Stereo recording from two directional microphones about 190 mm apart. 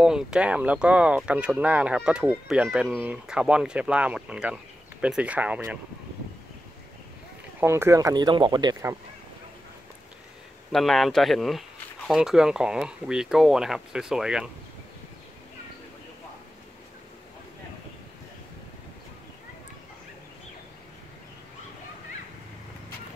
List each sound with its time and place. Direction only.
0.0 s speech: 5° right (ahead or behind)
7.6 s speech: 15° right (ahead or behind)
10.7 s speech: centre (ahead or behind)